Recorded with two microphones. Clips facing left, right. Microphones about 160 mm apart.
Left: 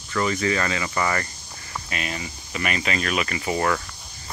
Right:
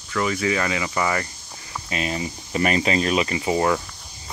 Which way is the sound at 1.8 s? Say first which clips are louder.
Right 6 dB; 30° right (ahead or behind).